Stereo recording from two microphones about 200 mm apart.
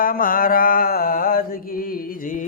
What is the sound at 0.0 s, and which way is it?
Mantra, 45° left (ahead or behind).